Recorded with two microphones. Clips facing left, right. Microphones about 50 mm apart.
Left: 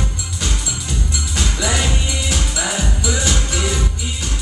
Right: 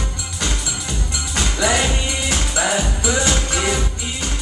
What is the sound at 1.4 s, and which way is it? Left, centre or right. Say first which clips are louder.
Music: right 3 dB; right.